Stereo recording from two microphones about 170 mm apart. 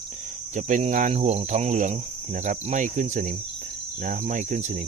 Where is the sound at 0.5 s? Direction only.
45° right (ahead or behind).